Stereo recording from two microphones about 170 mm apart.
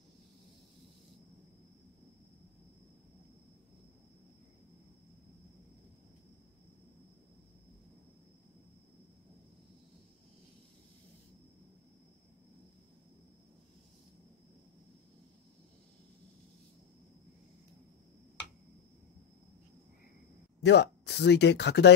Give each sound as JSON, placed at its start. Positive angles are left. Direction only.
{"t": 20.6, "sound": "speech", "side_deg": 85}